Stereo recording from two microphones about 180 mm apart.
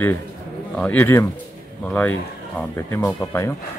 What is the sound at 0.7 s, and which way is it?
Speech, 10° left (ahead or behind).